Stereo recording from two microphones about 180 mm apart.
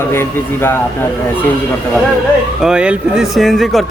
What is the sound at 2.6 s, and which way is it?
Speech, 5° right (ahead or behind).